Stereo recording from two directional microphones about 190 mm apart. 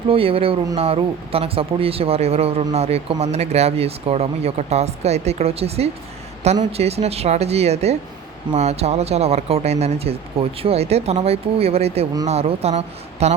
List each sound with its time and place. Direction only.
0.1 s speech: 30° right (ahead or behind)